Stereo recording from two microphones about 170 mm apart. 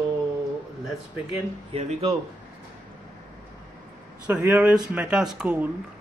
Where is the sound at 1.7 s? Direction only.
35° right (ahead or behind).